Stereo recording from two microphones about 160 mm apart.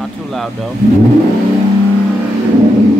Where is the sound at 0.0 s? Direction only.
Centre (ahead or behind).